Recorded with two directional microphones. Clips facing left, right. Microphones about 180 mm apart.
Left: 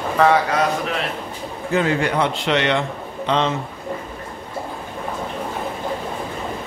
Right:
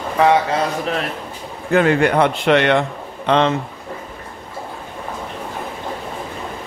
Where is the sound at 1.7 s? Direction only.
60° right (ahead or behind).